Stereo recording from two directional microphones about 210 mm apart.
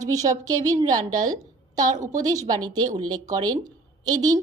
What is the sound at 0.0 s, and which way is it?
A woman's voice, 15° right (ahead or behind).